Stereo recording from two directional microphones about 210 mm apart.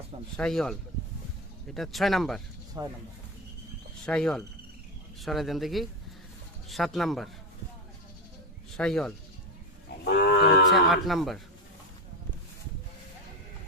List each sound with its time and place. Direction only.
0.3 s speech: 5° left (ahead or behind)
2.8 s speech: 15° right (ahead or behind)
4.0 s speech: 5° left (ahead or behind)
8.7 s speech: 5° left (ahead or behind)
10.0 s wild animals: 50° left (ahead or behind)
10.7 s speech: centre (ahead or behind)